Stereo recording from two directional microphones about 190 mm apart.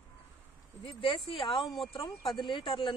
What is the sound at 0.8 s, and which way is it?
Speech, 25° left (ahead or behind).